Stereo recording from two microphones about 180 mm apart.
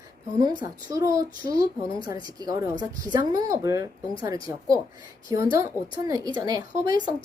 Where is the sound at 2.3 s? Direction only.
20° right (ahead or behind).